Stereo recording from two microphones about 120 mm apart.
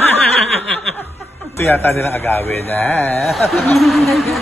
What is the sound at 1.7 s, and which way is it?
Speech, 20° left (ahead or behind).